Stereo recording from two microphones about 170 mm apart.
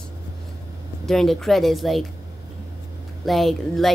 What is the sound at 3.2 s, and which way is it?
Speech, centre (ahead or behind).